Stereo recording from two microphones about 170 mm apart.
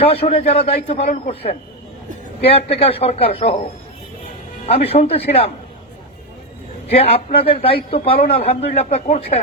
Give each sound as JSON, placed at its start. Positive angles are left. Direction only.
{"t": 0.0, "sound": "a man's voice", "side_deg": 35}
{"t": 6.8, "sound": "a man's voice", "side_deg": 35}